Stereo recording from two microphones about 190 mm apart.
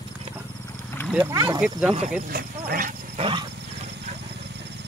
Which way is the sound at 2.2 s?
50° right (ahead or behind).